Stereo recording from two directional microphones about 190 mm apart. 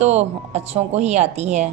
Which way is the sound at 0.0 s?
35° right (ahead or behind).